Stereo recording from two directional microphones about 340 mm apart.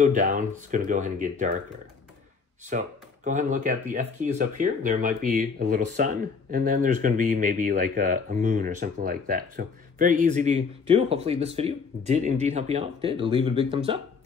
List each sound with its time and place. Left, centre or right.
0.0 s speech: right
2.7 s speech: right